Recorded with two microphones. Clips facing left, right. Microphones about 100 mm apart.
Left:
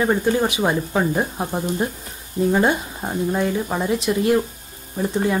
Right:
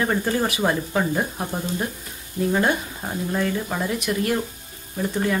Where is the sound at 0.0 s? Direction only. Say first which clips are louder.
Left 4 dB; 15° left (ahead or behind).